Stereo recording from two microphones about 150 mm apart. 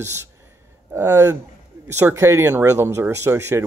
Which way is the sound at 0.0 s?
20° right (ahead or behind).